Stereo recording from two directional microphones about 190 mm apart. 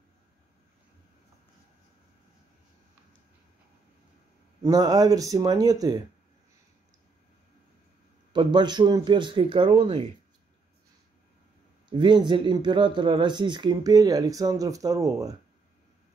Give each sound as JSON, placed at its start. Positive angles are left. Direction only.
{"t": 4.6, "sound": "speech", "side_deg": -20}
{"t": 8.3, "sound": "speech", "side_deg": -25}
{"t": 11.9, "sound": "speech", "side_deg": -25}